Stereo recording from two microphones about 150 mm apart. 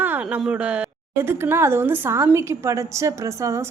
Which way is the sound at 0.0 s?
10° right (ahead or behind).